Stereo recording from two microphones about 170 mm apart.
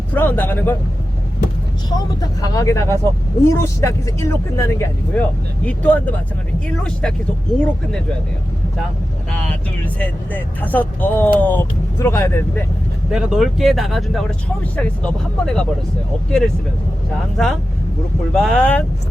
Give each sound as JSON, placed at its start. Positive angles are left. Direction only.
{"t": 0.1, "sound": "speech", "side_deg": 10}
{"t": 1.9, "sound": "speech", "side_deg": 25}
{"t": 9.5, "sound": "speech", "side_deg": 10}
{"t": 13.1, "sound": "speech", "side_deg": -5}
{"t": 17.3, "sound": "speech", "side_deg": 0}